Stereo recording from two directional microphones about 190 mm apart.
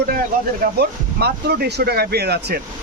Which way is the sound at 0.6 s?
60° right (ahead or behind).